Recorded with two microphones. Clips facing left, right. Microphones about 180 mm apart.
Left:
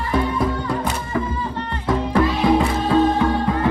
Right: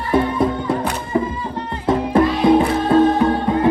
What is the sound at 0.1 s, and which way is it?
Music, 25° right (ahead or behind).